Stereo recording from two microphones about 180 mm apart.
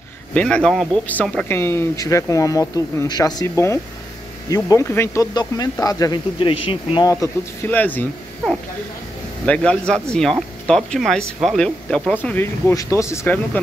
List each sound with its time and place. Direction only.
0.3 s speech: 5° left (ahead or behind); by 7.1 s 30° left (ahead or behind)
7.1 s speech: 15° left (ahead or behind)
9.5 s a man's voice: 5° left (ahead or behind)